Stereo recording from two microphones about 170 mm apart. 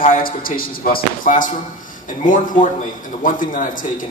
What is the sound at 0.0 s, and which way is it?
A man's voice, 55° left (ahead or behind).